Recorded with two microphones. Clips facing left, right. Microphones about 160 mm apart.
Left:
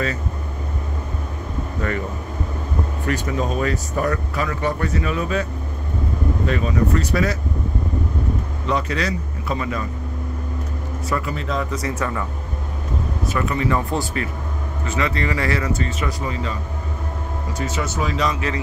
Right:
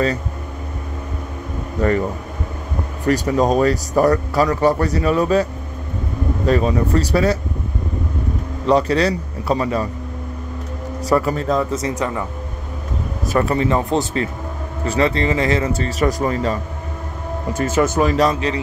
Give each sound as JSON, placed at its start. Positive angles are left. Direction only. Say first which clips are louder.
{"t": 1.8, "sound": "speech", "louder": "right 8 dB", "side_deg": -35}
{"t": 3.1, "sound": "speech", "louder": "right 8 dB", "side_deg": -40}
{"t": 8.6, "sound": "speech", "louder": "right 8 dB", "side_deg": -35}
{"t": 11.1, "sound": "speech", "louder": "right 8 dB", "side_deg": -40}
{"t": 11.7, "sound": "speech", "louder": "right 3 dB", "side_deg": -20}
{"t": 13.3, "sound": "speech", "louder": "right 5 dB", "side_deg": -35}
{"t": 17.6, "sound": "speech", "louder": "right 9 dB", "side_deg": -50}